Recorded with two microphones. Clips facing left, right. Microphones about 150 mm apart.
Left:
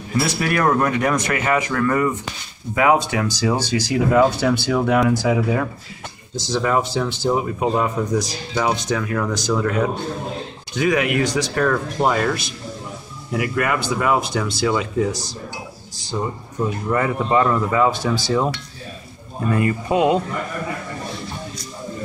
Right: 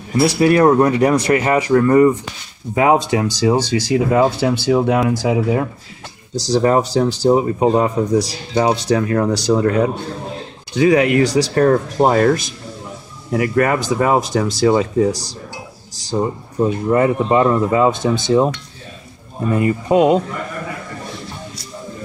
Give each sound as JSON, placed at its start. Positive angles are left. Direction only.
{"t": 0.4, "sound": "speech", "side_deg": -30}
{"t": 6.3, "sound": "speech", "side_deg": -35}
{"t": 19.5, "sound": "speech", "side_deg": -25}